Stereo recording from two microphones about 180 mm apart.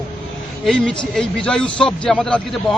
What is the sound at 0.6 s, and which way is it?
A man's voice, 5° left (ahead or behind).